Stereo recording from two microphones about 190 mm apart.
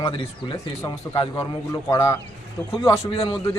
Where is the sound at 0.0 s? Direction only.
25° left (ahead or behind).